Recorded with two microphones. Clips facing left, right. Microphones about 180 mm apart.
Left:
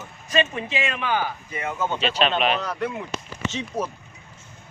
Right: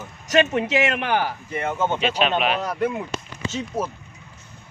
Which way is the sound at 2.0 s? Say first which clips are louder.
Left 2 dB; 10° right (ahead or behind).